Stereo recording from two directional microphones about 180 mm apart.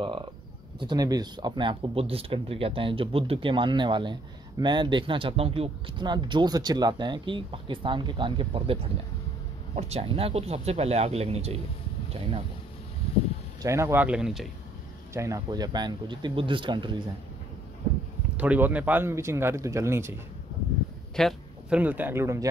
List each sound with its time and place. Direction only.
0.0 s speech: 25° right (ahead or behind)
9.8 s speech: 35° right (ahead or behind)
13.6 s speech: 15° right (ahead or behind)
15.1 s speech: 20° right (ahead or behind)
18.4 s speech: 10° right (ahead or behind)
21.2 s speech: centre (ahead or behind)